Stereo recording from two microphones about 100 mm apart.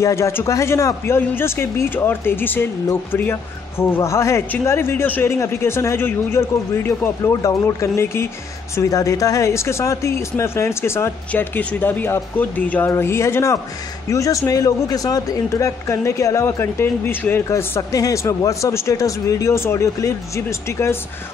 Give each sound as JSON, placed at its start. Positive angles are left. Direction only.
{"t": 0.0, "sound": "speech", "side_deg": 30}